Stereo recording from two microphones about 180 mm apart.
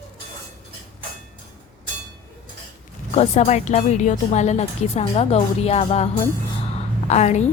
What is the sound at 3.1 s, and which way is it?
A woman's voice, 35° left (ahead or behind).